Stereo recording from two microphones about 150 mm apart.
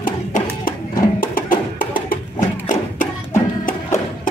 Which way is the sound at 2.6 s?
65° left (ahead or behind).